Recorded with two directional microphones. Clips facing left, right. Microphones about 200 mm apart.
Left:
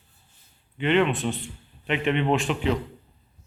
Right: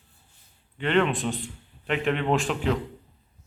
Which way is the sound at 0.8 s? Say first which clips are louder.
Left 1 dB; 5° left (ahead or behind).